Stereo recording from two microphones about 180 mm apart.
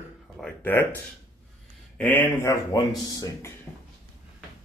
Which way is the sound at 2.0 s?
10° left (ahead or behind).